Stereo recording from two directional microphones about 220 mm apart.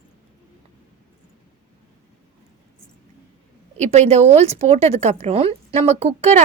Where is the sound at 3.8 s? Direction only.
30° right (ahead or behind).